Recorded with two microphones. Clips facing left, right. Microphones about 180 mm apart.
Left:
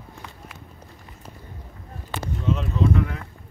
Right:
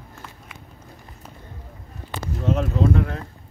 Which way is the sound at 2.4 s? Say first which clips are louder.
Right 3 dB; 45° right (ahead or behind).